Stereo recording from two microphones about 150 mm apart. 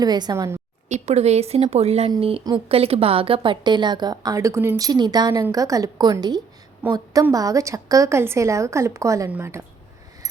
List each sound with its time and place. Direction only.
0.0 s a woman's voice: 25° right (ahead or behind)
0.9 s a woman's voice: 50° right (ahead or behind); by 9.6 s 15° right (ahead or behind)